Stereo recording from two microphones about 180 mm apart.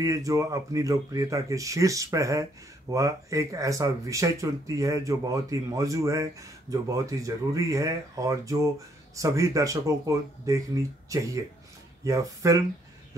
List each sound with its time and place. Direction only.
0.0 s speech: 15° right (ahead or behind)